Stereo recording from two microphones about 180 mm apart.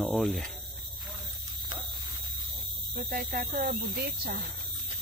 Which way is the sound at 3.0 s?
55° right (ahead or behind).